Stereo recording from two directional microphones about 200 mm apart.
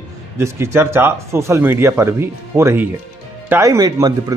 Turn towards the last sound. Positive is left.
turn(degrees=-20)  # may be behind; listen again after turning